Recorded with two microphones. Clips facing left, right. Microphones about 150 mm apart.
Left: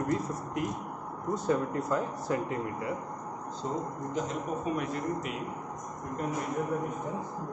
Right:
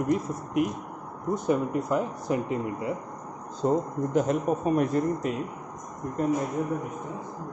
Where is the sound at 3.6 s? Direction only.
55° right (ahead or behind).